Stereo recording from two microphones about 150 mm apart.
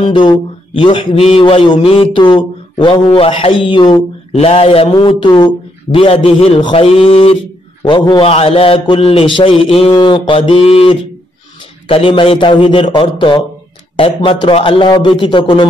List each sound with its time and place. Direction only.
0.1 s a man's voice: 30° left (ahead or behind)
4.3 s a man's voice: 40° left (ahead or behind)